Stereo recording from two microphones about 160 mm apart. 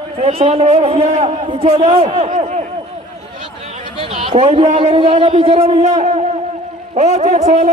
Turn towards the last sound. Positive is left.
turn(degrees=-45)  # may be behind; listen again after turning